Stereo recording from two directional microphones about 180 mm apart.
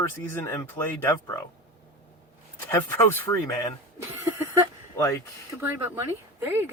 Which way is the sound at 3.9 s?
15° right (ahead or behind).